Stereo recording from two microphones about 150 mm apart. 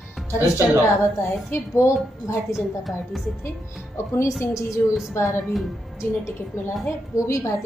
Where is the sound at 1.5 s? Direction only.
20° left (ahead or behind).